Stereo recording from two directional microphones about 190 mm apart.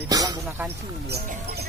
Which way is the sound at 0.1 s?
20° right (ahead or behind).